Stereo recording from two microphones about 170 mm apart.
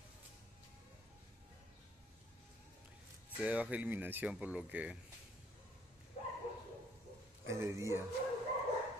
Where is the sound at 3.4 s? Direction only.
10° right (ahead or behind).